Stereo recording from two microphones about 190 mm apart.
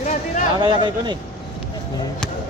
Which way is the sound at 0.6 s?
25° right (ahead or behind).